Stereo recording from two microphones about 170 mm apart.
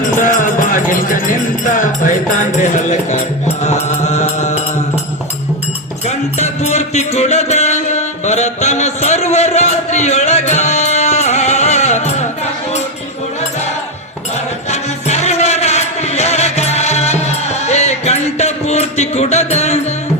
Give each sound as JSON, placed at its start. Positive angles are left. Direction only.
{"t": 0.2, "sound": "music", "side_deg": 50}
{"t": 6.1, "sound": "music", "side_deg": 40}
{"t": 14.7, "sound": "music", "side_deg": 40}